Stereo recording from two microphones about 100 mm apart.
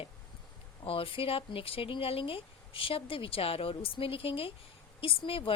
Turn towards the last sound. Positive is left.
turn(degrees=65)  # may be behind; listen again after turning